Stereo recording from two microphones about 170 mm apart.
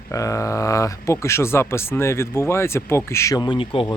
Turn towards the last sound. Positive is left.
turn(degrees=30)  # may be behind; listen again after turning